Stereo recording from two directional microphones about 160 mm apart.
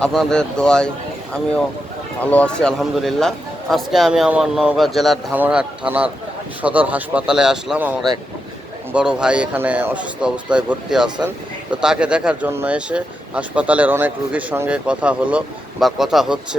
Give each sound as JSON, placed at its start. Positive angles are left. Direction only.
{"t": 0.0, "sound": "a man's voice", "side_deg": 5}
{"t": 2.3, "sound": "a man's voice", "side_deg": 5}